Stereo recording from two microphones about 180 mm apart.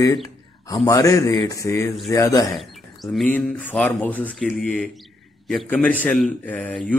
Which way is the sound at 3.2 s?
10° left (ahead or behind).